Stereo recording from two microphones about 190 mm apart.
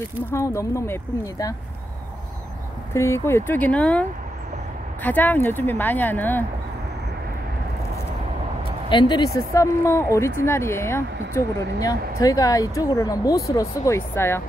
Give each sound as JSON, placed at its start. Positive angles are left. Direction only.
{"t": 0.3, "sound": "speech", "side_deg": 15}
{"t": 2.9, "sound": "speech", "side_deg": 15}
{"t": 5.0, "sound": "speech", "side_deg": 10}
{"t": 8.8, "sound": "speech", "side_deg": 25}